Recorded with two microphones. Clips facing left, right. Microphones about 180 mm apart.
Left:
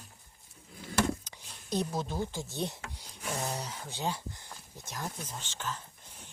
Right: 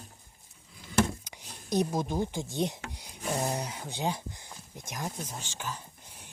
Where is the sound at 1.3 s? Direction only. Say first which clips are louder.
Right 3 dB; 15° right (ahead or behind).